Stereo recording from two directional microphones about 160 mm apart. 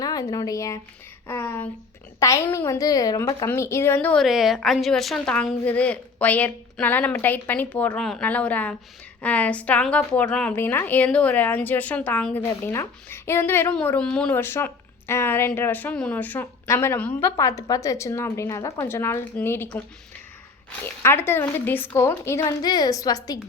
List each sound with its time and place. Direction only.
0.0 s a woman's voice: 25° left (ahead or behind)
20.8 s a woman's voice: 15° left (ahead or behind)